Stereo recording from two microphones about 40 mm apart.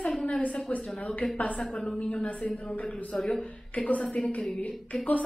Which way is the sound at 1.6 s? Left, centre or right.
Centre.